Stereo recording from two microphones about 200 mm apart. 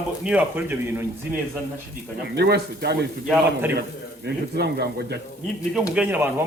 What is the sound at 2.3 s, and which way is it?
Speech, 55° right (ahead or behind).